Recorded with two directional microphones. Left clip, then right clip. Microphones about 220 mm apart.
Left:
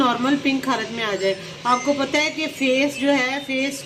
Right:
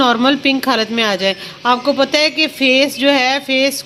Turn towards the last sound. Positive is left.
turn(degrees=-45)  # may be behind; listen again after turning